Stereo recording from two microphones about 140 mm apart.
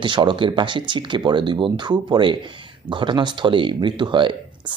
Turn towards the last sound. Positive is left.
turn(degrees=-35)  # may be behind; listen again after turning